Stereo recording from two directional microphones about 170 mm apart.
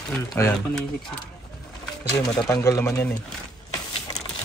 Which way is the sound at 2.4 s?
15° left (ahead or behind).